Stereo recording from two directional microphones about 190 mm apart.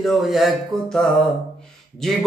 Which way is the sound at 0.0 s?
Centre (ahead or behind).